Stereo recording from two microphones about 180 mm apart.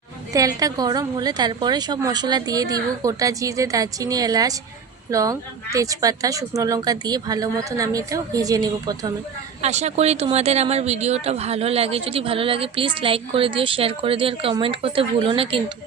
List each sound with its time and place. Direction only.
0.3 s a woman's voice: 20° right (ahead or behind)
9.6 s a woman's voice: 40° right (ahead or behind)